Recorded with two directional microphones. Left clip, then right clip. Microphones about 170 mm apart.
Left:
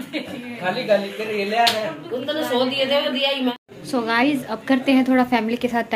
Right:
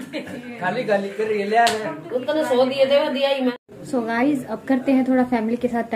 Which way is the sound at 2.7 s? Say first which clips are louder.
Right 2 dB; 70° right (ahead or behind).